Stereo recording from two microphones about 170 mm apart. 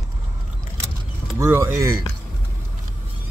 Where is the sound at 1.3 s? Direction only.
15° right (ahead or behind).